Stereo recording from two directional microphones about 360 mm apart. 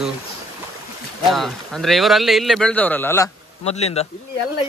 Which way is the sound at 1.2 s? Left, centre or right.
Centre.